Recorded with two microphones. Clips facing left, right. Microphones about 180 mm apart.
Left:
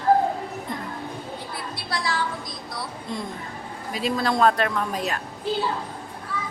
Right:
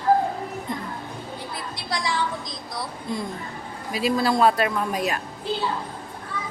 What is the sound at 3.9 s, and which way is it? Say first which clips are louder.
A man's voice: right 2 dB; 5° right (ahead or behind).